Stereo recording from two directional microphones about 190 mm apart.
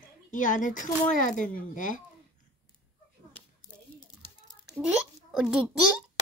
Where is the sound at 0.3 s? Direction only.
40° left (ahead or behind).